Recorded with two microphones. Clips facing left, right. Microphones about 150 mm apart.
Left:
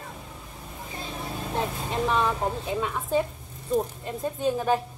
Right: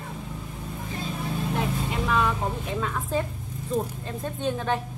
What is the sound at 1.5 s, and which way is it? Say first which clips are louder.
Speech: left 4 dB; 25° left (ahead or behind).